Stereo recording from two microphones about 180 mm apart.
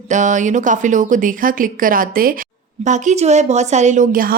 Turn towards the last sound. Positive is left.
turn(degrees=-45)  # may be behind; listen again after turning